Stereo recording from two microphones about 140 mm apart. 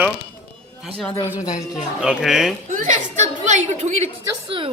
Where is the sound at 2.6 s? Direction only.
65° right (ahead or behind).